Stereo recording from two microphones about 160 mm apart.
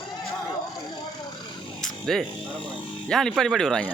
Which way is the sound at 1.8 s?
Centre (ahead or behind).